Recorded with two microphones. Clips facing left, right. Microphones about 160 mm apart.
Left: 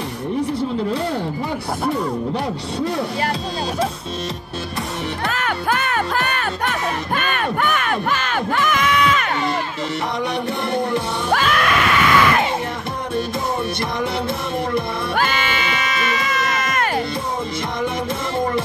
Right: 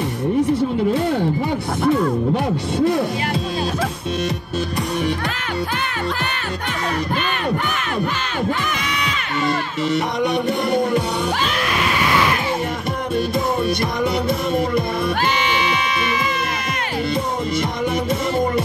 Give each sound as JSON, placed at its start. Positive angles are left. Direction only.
{"t": 5.4, "sound": "music", "side_deg": 50}
{"t": 7.2, "sound": "crowd", "side_deg": 55}
{"t": 11.3, "sound": "screaming", "side_deg": 60}
{"t": 15.1, "sound": "music", "side_deg": 50}